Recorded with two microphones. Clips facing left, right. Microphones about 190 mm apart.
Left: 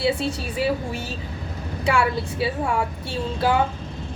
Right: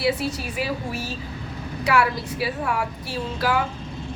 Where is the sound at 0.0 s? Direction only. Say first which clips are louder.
Left 1 dB; 30° left (ahead or behind).